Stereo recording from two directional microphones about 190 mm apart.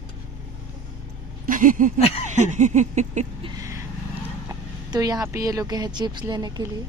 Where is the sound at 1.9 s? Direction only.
30° left (ahead or behind).